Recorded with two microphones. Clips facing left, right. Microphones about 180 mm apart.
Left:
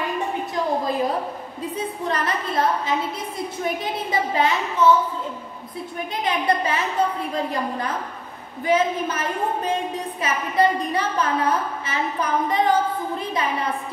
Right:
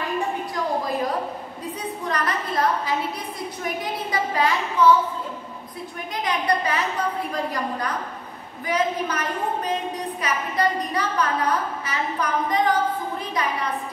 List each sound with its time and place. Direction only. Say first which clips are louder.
1.8 s a woman's voice: left 2 dB; 25° left (ahead or behind)
4.1 s a woman's voice: left 1 dB; 25° left (ahead or behind)
6.2 s a woman's voice: left 1 dB; 25° left (ahead or behind)
8.6 s a woman's voice: left 3 dB; 25° left (ahead or behind)